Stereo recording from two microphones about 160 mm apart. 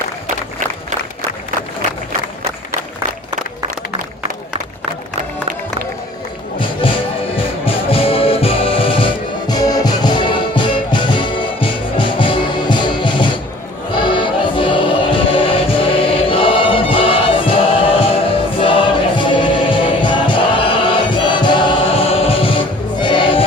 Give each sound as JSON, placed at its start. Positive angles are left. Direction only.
{"t": 6.8, "sound": "music", "side_deg": 35}